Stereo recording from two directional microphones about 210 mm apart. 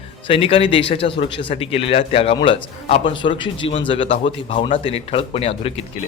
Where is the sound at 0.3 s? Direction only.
25° left (ahead or behind).